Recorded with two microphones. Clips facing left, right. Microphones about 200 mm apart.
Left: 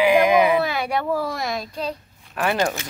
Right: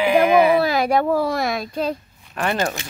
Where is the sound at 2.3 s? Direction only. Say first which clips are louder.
Even; centre (ahead or behind).